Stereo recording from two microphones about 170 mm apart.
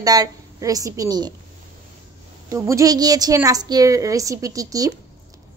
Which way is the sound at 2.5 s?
20° right (ahead or behind).